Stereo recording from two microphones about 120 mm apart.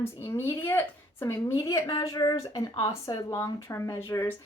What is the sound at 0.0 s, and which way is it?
A woman's voice, 20° left (ahead or behind).